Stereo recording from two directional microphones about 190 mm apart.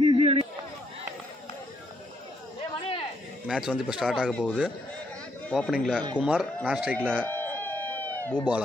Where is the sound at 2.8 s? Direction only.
30° left (ahead or behind).